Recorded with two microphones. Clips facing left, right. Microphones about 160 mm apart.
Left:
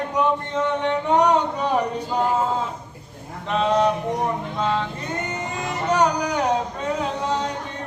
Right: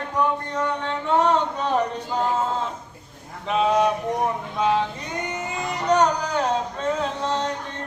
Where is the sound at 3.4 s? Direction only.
5° right (ahead or behind).